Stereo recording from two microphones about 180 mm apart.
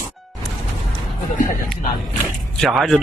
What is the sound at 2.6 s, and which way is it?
Speech, centre (ahead or behind).